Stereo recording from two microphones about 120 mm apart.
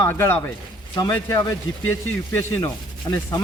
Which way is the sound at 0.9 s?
30° left (ahead or behind).